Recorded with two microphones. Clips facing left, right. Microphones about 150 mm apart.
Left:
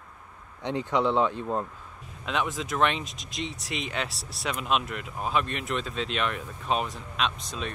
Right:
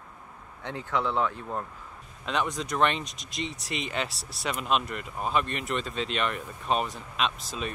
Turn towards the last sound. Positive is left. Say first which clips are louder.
# even
turn(degrees=0)  # may be behind; listen again after turning